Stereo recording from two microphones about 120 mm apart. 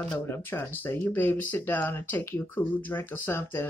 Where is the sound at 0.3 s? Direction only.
15° left (ahead or behind).